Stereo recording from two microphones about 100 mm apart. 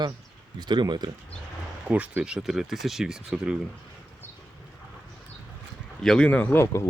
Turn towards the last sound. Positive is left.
turn(degrees=25)  # may be behind; listen again after turning